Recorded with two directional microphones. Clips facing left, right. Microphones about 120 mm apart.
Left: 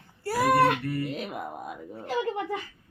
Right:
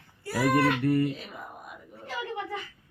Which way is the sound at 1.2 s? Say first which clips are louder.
Left 8 dB; 80° left.